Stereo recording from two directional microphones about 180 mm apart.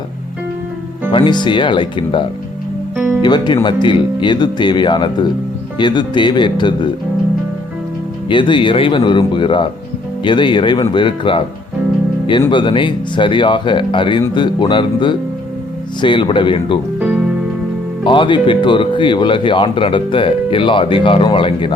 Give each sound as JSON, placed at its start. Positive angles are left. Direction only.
{"t": 1.1, "sound": "speech", "side_deg": 25}
{"t": 2.9, "sound": "music", "side_deg": -10}
{"t": 3.2, "sound": "speech", "side_deg": 25}
{"t": 8.3, "sound": "speech", "side_deg": 25}
{"t": 17.0, "sound": "music", "side_deg": -5}
{"t": 18.0, "sound": "speech", "side_deg": 25}